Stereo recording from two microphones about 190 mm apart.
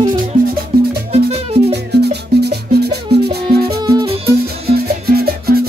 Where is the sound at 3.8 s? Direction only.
20° right (ahead or behind).